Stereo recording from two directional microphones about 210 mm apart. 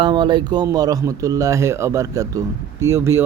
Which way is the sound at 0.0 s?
20° right (ahead or behind).